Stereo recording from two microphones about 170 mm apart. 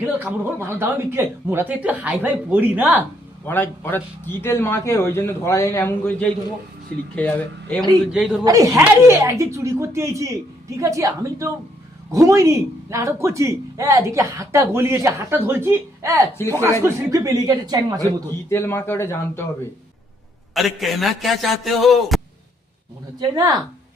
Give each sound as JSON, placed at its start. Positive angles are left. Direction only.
{"t": 0.3, "sound": "speech", "side_deg": -15}
{"t": 3.4, "sound": "a man's voice", "side_deg": 10}
{"t": 8.1, "sound": "a man's voice", "side_deg": -5}
{"t": 8.4, "sound": "speech", "side_deg": -20}
{"t": 18.5, "sound": "a man's voice", "side_deg": 15}
{"t": 20.5, "sound": "a man's voice", "side_deg": 0}
{"t": 23.2, "sound": "speech", "side_deg": -25}